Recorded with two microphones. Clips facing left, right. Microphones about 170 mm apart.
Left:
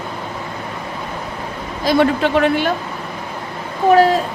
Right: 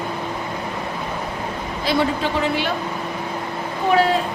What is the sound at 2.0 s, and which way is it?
Speech, 65° left (ahead or behind).